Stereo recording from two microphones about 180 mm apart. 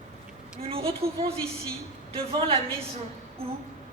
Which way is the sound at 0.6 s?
30° right (ahead or behind).